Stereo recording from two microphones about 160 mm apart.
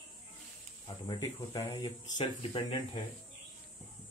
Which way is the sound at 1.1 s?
20° left (ahead or behind).